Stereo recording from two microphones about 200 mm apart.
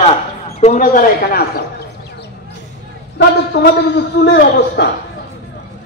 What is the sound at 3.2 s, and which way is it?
A man's voice, 55° left (ahead or behind).